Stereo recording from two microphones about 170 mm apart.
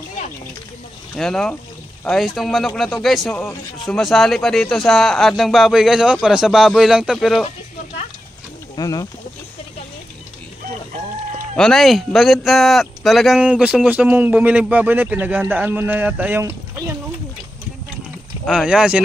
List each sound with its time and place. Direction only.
1.1 s speech: centre (ahead or behind)
8.7 s speech: 20° left (ahead or behind)
11.5 s speech: centre (ahead or behind); by 16.9 s 15° right (ahead or behind)
18.5 s speech: 5° right (ahead or behind)